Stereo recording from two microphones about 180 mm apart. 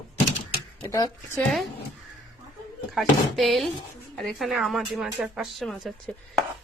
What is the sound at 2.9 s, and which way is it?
Speech, centre (ahead or behind).